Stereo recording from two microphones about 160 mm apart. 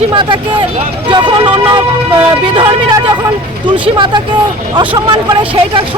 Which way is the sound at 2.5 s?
30° right (ahead or behind).